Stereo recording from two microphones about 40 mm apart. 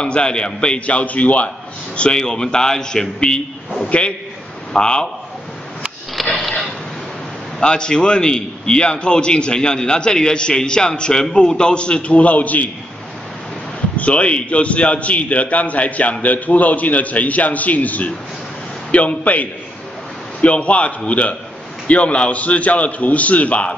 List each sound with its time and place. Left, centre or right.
0.0 s a man's voice: left
0.7 s a man's voice: left
2.0 s a man's voice: left
6.2 s a sound: centre
7.6 s a man's voice: centre; by 12.6 s left
13.9 s a man's voice: left